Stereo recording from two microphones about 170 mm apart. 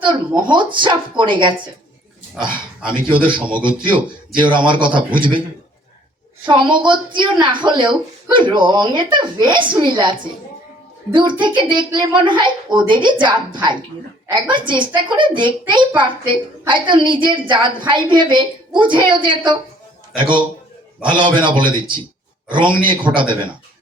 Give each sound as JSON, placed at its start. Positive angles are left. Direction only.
{"t": 0.3, "sound": "a woman's voice", "side_deg": -30}
{"t": 6.5, "sound": "a woman's voice", "side_deg": -30}